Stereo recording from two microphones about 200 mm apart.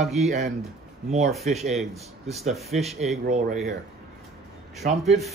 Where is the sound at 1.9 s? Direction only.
30° right (ahead or behind).